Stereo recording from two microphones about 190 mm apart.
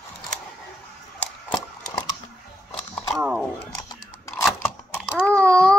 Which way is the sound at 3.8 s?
20° left (ahead or behind).